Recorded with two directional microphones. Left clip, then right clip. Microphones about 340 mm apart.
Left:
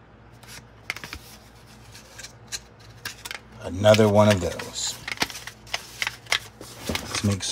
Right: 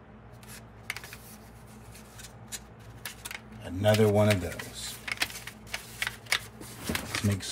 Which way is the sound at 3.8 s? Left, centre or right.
Centre.